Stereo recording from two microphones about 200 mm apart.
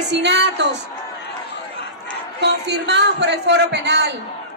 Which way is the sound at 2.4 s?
60° right (ahead or behind).